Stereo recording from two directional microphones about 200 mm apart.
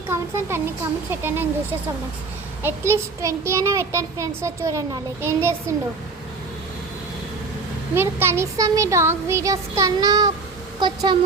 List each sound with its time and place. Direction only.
0.1 s a child's voice: 10° right (ahead or behind)
2.6 s a child's voice: 10° right (ahead or behind)
7.9 s a child's voice: 10° right (ahead or behind)